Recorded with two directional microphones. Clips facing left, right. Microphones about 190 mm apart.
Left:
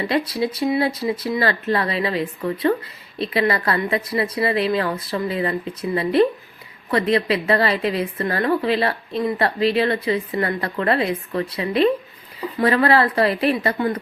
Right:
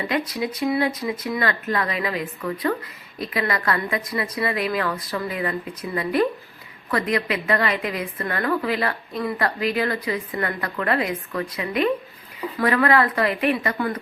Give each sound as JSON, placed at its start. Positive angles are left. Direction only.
{"t": 0.1, "sound": "a woman's voice", "side_deg": 30}